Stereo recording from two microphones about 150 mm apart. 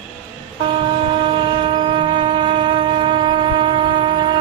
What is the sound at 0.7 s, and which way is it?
Shofar, 35° right (ahead or behind).